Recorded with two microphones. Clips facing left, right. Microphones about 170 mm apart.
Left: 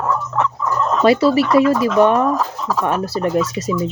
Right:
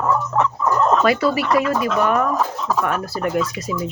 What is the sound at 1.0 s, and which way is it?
Speech, 30° left (ahead or behind).